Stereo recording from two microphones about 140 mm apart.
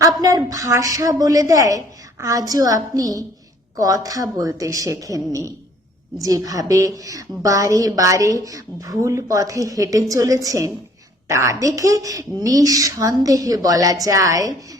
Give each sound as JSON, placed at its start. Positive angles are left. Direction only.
{"t": 0.0, "sound": "a woman's voice", "side_deg": -25}